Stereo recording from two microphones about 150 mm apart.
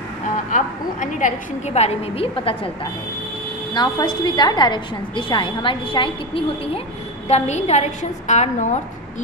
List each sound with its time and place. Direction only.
0.5 s a woman's voice: 55° left (ahead or behind); by 2.7 s 35° left (ahead or behind)
3.7 s a woman's voice: 30° left (ahead or behind); by 8.8 s 50° left (ahead or behind)